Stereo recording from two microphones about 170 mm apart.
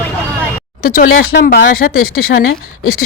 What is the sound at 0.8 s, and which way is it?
Speech, 60° left (ahead or behind).